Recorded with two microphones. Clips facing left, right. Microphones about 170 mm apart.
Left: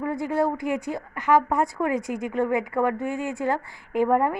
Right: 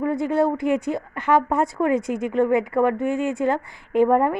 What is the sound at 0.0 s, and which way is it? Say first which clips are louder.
A woman's voice: right 4 dB; 25° right (ahead or behind).